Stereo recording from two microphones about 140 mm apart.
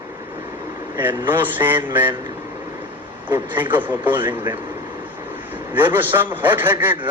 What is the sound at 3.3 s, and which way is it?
Speech, 15° right (ahead or behind).